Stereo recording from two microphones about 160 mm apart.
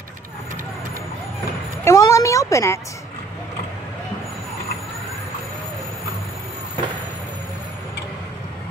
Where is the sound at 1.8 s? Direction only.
20° left (ahead or behind).